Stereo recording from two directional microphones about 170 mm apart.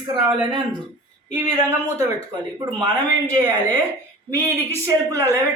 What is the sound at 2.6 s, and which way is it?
Speech, 25° right (ahead or behind).